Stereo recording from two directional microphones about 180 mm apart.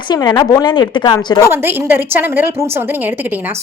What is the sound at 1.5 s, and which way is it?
Speech, 10° right (ahead or behind).